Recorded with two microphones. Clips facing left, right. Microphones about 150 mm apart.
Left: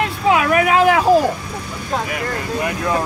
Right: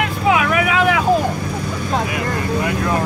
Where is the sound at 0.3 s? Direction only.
40° left (ahead or behind).